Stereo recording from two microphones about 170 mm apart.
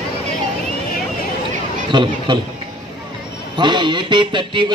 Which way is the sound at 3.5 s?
25° right (ahead or behind).